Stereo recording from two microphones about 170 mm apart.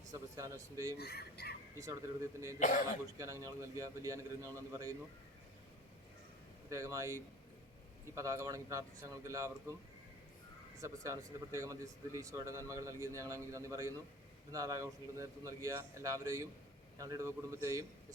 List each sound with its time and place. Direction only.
0.1 s a man's voice: 20° right (ahead or behind)
0.9 s speech: 70° left (ahead or behind)
1.8 s a man's voice: 20° right (ahead or behind)
2.6 s speech: 50° left (ahead or behind)
3.2 s speech: 20° right (ahead or behind)
6.7 s speech: 20° right (ahead or behind)
10.8 s speech: 20° right (ahead or behind)